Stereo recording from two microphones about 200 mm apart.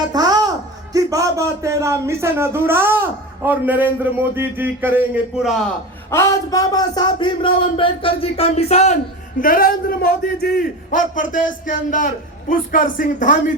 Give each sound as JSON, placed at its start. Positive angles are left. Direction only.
{"t": 0.1, "sound": "a sound", "side_deg": -20}
{"t": 0.9, "sound": "speech", "side_deg": -15}
{"t": 6.1, "sound": "speech", "side_deg": 15}
{"t": 9.4, "sound": "a man's voice", "side_deg": 45}